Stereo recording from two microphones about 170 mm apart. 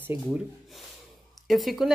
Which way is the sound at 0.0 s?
10° right (ahead or behind).